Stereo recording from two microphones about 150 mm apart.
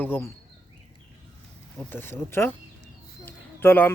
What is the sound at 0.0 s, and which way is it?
Speech, 15° left (ahead or behind).